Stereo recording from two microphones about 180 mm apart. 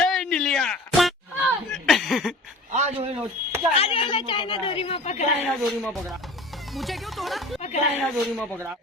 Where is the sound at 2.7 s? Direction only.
35° right (ahead or behind).